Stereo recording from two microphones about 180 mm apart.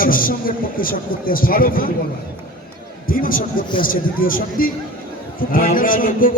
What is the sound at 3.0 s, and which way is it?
A man's voice, 50° left (ahead or behind).